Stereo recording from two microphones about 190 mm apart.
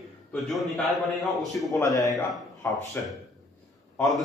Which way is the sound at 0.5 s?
Centre (ahead or behind).